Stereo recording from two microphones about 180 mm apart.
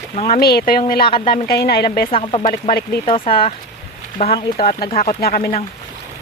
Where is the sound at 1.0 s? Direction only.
25° left (ahead or behind).